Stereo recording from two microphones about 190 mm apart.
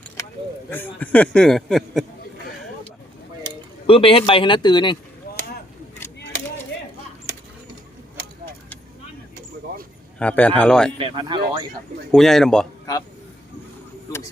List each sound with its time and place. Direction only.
0.9 s speech: 5° left (ahead or behind)
3.8 s speech: 30° left (ahead or behind)
10.2 s a man's voice: 5° left (ahead or behind)
10.9 s speech: 30° right (ahead or behind)
12.1 s speech: centre (ahead or behind)